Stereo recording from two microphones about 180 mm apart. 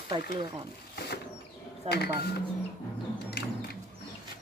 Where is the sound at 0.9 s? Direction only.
65° left (ahead or behind).